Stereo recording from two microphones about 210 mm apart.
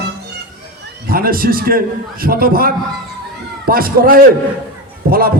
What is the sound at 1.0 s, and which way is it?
A man's voice, 45° right (ahead or behind).